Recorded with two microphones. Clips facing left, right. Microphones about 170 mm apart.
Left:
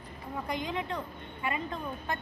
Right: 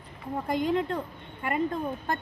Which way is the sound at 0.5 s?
50° right (ahead or behind).